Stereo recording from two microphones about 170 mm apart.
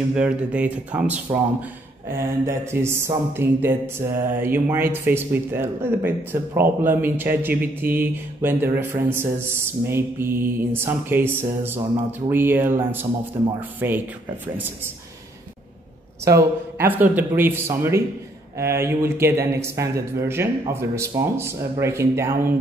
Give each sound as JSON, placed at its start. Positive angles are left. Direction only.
{"t": 0.1, "sound": "speech", "side_deg": -5}
{"t": 16.7, "sound": "speech", "side_deg": -10}